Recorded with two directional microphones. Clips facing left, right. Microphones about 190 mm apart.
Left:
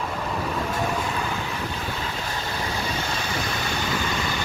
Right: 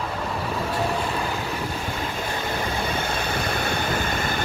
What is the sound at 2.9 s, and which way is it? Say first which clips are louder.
Vehicle: right 2 dB; 55° right (ahead or behind).